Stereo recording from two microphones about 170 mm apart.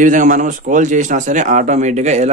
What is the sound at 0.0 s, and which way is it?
A man's voice, 50° right (ahead or behind).